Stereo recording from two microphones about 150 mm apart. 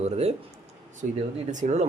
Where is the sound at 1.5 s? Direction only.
50° right (ahead or behind).